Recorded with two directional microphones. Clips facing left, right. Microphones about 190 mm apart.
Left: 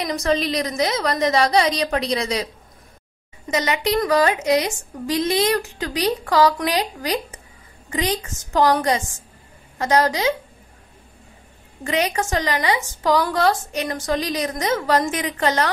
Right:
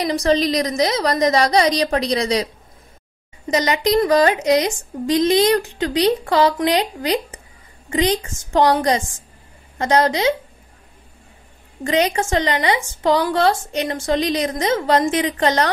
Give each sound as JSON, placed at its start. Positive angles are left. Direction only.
{"t": 0.0, "sound": "a woman's voice", "side_deg": -35}
{"t": 3.4, "sound": "a woman's voice", "side_deg": -35}
{"t": 11.8, "sound": "a woman's voice", "side_deg": -30}